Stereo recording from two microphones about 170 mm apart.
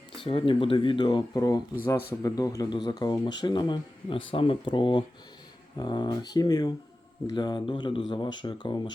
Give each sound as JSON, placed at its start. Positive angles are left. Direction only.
{"t": 0.2, "sound": "speech", "side_deg": 30}